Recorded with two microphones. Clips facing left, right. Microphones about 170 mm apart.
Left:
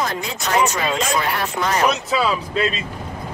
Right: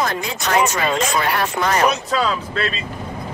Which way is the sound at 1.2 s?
75° right (ahead or behind).